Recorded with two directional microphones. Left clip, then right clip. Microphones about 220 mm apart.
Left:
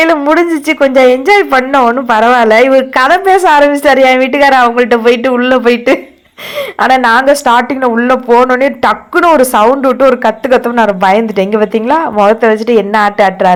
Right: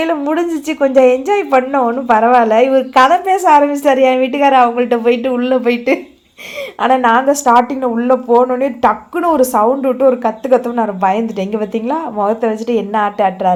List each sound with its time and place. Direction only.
0.0 s speech: 25° left (ahead or behind)
0.9 s speech: 60° left (ahead or behind)
1.2 s speech: 25° left (ahead or behind)